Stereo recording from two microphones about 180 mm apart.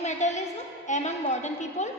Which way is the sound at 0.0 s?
40° left (ahead or behind).